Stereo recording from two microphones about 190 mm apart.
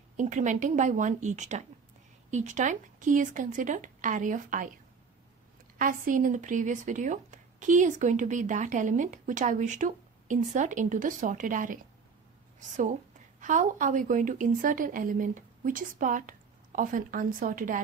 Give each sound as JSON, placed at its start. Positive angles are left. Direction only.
{"t": 0.2, "sound": "speech", "side_deg": -40}
{"t": 5.8, "sound": "a woman's voice", "side_deg": -45}